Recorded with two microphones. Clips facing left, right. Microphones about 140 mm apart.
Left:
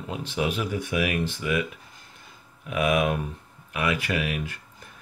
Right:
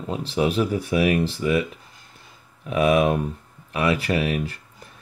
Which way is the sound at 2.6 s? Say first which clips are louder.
Right 5 dB; 35° right (ahead or behind).